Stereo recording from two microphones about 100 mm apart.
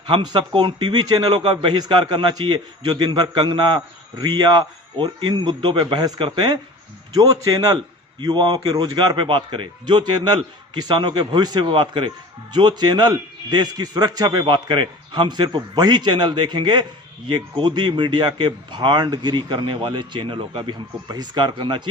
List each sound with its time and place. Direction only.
0.1 s a man's voice: 50° right (ahead or behind)
7.1 s a man's voice: 40° right (ahead or behind)